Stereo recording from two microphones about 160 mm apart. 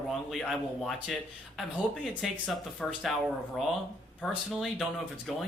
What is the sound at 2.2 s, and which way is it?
Speech, centre (ahead or behind).